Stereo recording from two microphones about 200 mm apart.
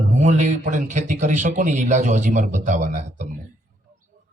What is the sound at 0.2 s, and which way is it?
A man's voice, 35° right (ahead or behind).